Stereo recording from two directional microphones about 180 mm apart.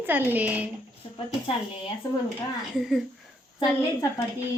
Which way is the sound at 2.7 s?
Centre (ahead or behind).